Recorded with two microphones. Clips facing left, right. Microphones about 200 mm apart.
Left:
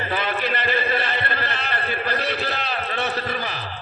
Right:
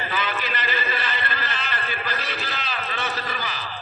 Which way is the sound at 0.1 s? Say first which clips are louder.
Left 5 dB; 60° left (ahead or behind).